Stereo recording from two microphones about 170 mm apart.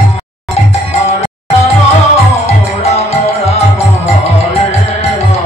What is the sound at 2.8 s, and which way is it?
Music, 40° left (ahead or behind).